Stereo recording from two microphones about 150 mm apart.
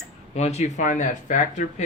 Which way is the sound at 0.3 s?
50° left (ahead or behind).